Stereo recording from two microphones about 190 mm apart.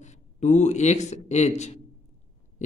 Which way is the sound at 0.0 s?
40° left (ahead or behind).